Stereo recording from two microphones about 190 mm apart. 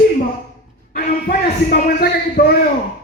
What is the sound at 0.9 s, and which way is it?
Speech, 55° left (ahead or behind).